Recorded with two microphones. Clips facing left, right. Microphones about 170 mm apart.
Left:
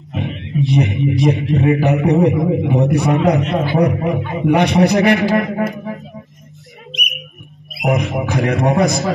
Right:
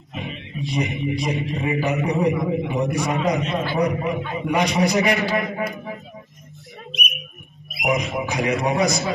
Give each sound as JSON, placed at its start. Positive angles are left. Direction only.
{"t": 0.1, "sound": "a man's voice", "side_deg": 65}
{"t": 6.9, "sound": "bird", "side_deg": 90}
{"t": 7.8, "sound": "speech", "side_deg": 60}